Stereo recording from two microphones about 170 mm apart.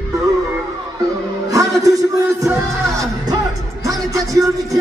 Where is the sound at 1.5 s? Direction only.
20° right (ahead or behind).